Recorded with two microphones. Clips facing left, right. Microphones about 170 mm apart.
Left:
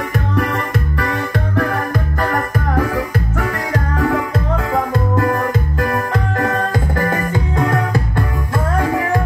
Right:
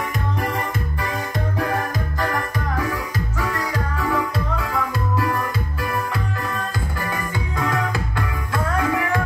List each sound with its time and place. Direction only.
0.4 s music: 70° left (ahead or behind)
2.1 s music: 55° left (ahead or behind)